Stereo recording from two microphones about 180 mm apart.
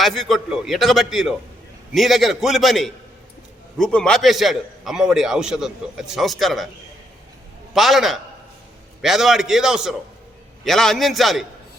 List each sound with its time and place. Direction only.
0.0 s a man's voice: centre (ahead or behind)
7.7 s a man's voice: centre (ahead or behind)